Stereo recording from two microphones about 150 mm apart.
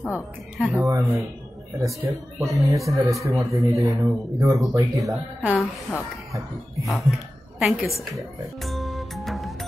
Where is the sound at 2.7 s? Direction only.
20° right (ahead or behind).